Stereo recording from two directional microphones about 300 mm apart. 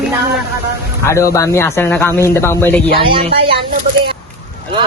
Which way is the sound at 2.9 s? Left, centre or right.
Centre.